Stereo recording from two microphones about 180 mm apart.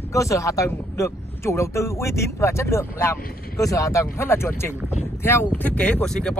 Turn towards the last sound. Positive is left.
turn(degrees=5)  # may be behind; listen again after turning